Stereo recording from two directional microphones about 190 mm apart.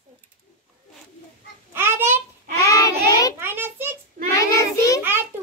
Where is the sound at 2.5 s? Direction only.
15° left (ahead or behind).